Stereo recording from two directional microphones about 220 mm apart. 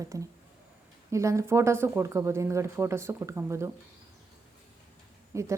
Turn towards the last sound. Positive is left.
turn(degrees=-15)  # may be behind; listen again after turning